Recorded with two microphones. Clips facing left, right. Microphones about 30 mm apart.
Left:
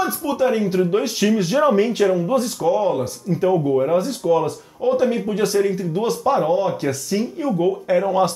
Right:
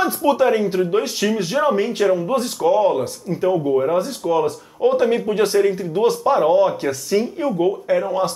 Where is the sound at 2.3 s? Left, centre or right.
Right.